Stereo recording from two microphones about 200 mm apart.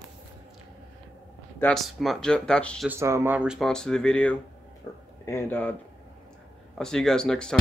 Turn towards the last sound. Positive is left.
turn(degrees=5)  # may be behind; listen again after turning